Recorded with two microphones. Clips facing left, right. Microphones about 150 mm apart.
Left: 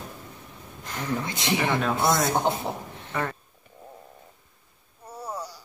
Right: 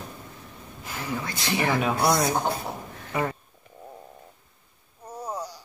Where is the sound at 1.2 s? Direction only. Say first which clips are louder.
Right 1 dB; 20° left (ahead or behind).